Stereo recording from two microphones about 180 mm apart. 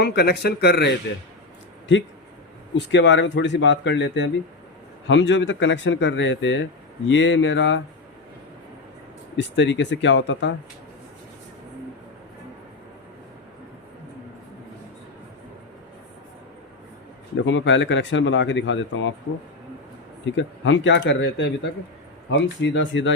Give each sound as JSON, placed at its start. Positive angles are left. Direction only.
{"t": 0.0, "sound": "a man's voice", "side_deg": 60}
{"t": 2.7, "sound": "speech", "side_deg": 75}
{"t": 9.4, "sound": "speech", "side_deg": 80}
{"t": 17.4, "sound": "speech", "side_deg": 90}
{"t": 20.2, "sound": "speech", "side_deg": 90}